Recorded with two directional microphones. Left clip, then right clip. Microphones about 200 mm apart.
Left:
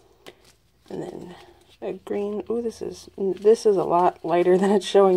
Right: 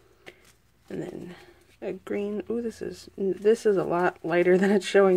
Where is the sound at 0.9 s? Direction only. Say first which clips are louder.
Left 2 dB; 25° right (ahead or behind).